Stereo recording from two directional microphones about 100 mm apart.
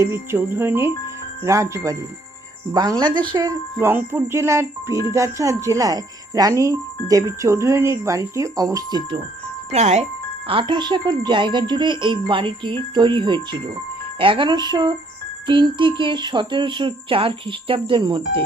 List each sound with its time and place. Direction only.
0.0 s speech: 25° right (ahead or behind)
3.2 s speech: 50° right (ahead or behind)
3.8 s speech: 25° right (ahead or behind); by 9.2 s 50° right (ahead or behind)
9.7 s speech: 90° right
10.5 s speech: 55° right (ahead or behind)